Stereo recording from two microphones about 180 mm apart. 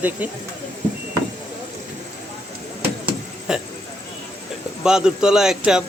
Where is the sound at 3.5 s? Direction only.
5° right (ahead or behind).